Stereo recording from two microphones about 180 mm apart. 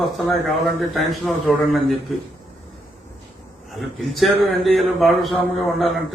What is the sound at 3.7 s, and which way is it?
A man's voice, centre (ahead or behind).